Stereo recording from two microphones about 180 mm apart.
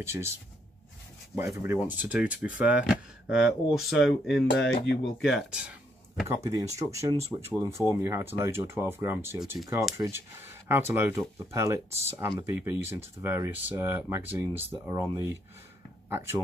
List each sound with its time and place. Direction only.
0.0 s speech: 15° right (ahead or behind)
1.4 s speech: 15° right (ahead or behind)
6.2 s speech: 15° right (ahead or behind)
11.9 s speech: 35° right (ahead or behind)
12.2 s speech: 15° right (ahead or behind)